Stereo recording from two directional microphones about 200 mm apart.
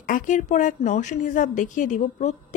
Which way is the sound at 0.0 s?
40° left (ahead or behind).